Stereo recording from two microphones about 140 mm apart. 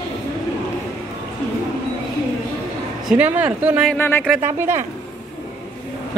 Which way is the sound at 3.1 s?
10° right (ahead or behind).